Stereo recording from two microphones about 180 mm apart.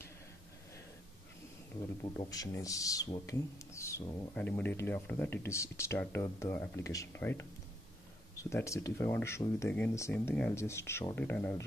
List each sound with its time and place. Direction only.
2.1 s speech: 20° left (ahead or behind)